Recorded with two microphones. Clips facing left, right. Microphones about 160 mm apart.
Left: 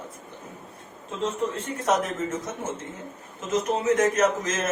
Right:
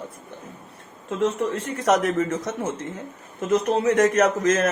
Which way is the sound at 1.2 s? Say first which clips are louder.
Right 4 dB; 80° right.